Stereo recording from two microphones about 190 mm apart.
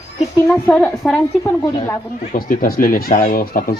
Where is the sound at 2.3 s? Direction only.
50° left (ahead or behind).